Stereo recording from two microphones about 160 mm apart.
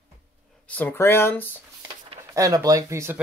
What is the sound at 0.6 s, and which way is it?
Speech, 10° left (ahead or behind).